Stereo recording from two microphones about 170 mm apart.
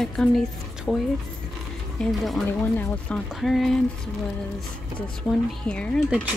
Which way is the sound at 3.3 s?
Centre (ahead or behind).